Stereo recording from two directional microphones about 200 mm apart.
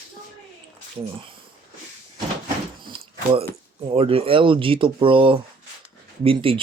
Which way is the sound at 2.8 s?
25° right (ahead or behind).